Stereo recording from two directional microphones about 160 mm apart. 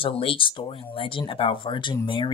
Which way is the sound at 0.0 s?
35° left (ahead or behind).